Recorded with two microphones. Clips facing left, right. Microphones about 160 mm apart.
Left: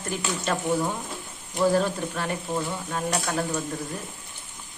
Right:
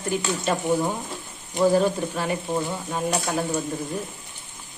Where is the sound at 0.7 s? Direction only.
15° right (ahead or behind).